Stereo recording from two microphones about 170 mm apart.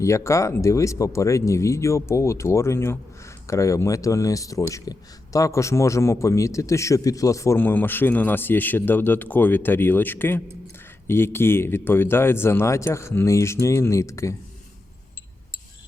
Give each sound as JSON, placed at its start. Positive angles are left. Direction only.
{"t": 0.0, "sound": "speech", "side_deg": 15}